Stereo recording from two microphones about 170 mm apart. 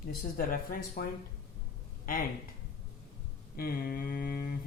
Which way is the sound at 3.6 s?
60° left (ahead or behind).